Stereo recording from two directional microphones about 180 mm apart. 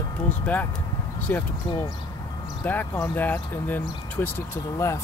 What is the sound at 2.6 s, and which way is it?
Speech, 10° left (ahead or behind).